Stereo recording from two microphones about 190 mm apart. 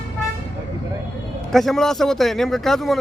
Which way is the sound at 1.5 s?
Centre (ahead or behind).